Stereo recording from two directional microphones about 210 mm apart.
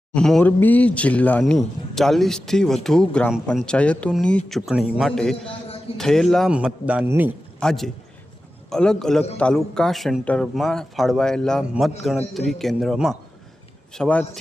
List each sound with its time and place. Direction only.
0.1 s a man's voice: 5° left (ahead or behind)
7.6 s a man's voice: centre (ahead or behind)